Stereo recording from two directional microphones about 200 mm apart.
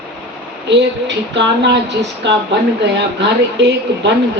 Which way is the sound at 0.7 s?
60° right (ahead or behind).